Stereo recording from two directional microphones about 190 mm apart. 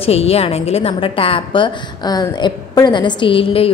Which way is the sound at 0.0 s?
30° left (ahead or behind).